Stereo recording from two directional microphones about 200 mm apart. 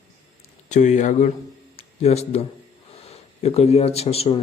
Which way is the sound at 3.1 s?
30° left (ahead or behind).